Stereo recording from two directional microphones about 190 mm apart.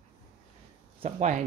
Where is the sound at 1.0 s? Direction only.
40° right (ahead or behind).